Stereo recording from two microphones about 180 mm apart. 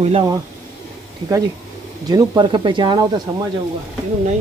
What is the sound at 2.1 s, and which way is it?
Speech, 25° right (ahead or behind).